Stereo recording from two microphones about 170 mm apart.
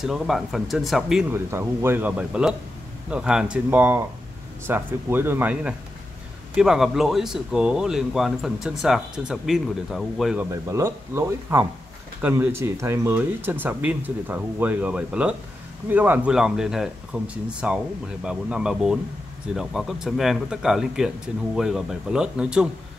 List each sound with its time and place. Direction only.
0.0 s speech: centre (ahead or behind)
1.3 s speech: 15° right (ahead or behind)
10.5 s speech: 15° right (ahead or behind)